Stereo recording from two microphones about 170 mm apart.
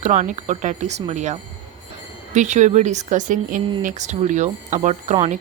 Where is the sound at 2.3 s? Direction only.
45° right (ahead or behind).